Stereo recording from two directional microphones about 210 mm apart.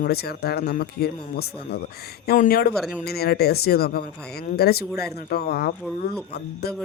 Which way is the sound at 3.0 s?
50° left (ahead or behind).